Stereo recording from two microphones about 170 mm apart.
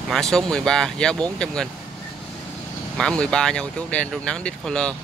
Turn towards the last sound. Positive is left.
turn(degrees=5)  # may be behind; listen again after turning